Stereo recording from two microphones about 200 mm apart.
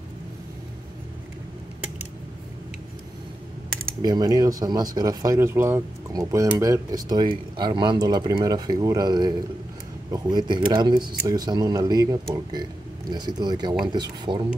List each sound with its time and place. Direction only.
4.0 s speech: 20° right (ahead or behind)